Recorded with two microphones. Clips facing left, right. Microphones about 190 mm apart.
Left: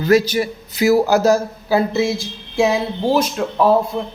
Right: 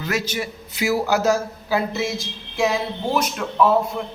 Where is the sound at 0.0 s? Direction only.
35° left (ahead or behind).